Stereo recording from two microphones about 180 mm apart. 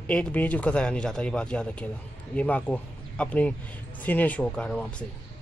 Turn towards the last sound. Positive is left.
turn(degrees=5)  # may be behind; listen again after turning